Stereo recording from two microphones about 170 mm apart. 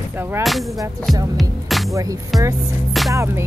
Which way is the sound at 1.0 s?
Centre (ahead or behind).